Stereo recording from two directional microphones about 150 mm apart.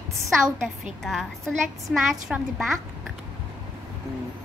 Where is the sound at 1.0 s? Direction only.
Centre (ahead or behind).